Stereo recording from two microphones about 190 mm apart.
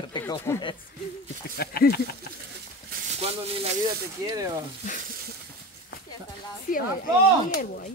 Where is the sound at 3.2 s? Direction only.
30° right (ahead or behind).